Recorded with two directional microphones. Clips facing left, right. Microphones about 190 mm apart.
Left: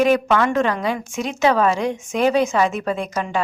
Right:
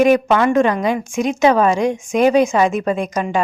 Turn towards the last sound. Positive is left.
turn(degrees=-15)  # may be behind; listen again after turning